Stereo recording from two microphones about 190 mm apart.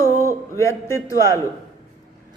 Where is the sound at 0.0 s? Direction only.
15° right (ahead or behind).